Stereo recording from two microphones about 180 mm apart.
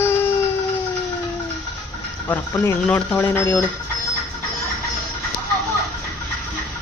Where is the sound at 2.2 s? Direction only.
10° left (ahead or behind).